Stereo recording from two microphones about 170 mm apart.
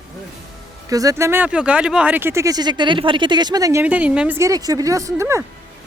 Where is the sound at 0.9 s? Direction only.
20° right (ahead or behind).